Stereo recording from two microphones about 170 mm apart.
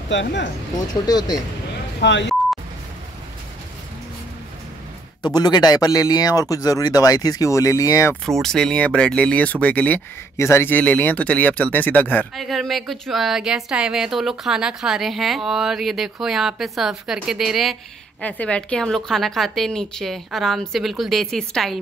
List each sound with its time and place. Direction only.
0.1 s speech: 90° left
1.0 s speech: 20° left (ahead or behind)
2.0 s speech: 90° left
5.3 s speech: 25° left (ahead or behind)
8.4 s speech: 5° left (ahead or behind)